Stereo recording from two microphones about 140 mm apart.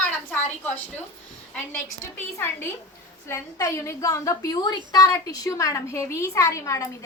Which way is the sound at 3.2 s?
20° left (ahead or behind).